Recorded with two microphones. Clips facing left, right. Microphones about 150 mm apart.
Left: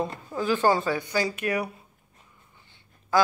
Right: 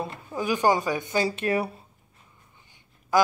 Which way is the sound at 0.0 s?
15° right (ahead or behind).